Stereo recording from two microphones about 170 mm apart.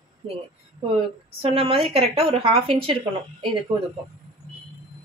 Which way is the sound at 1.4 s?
35° right (ahead or behind).